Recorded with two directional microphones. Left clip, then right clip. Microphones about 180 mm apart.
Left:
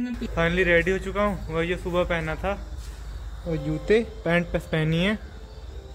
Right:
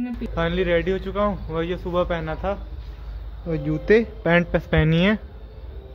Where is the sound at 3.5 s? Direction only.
25° right (ahead or behind).